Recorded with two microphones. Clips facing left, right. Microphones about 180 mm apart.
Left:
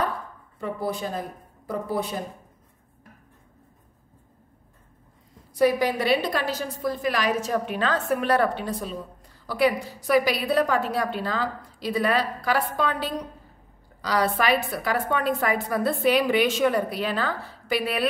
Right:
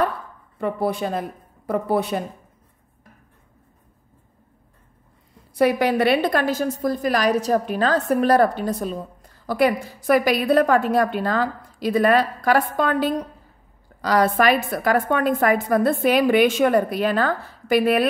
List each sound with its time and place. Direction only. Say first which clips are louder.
0.6 s speech: right 6 dB; 65° right (ahead or behind)
5.5 s a woman's voice: right 3 dB; 65° right (ahead or behind); by 18.0 s 50° right (ahead or behind)